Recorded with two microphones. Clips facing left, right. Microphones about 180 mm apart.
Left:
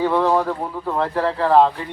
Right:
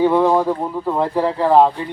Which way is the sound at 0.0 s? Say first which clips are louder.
Right 4 dB; 15° right (ahead or behind).